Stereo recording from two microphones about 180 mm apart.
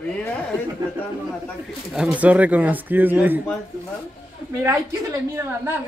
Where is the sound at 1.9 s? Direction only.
5° right (ahead or behind).